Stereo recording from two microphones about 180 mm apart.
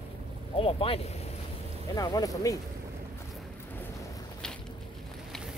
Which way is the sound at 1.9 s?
20° left (ahead or behind).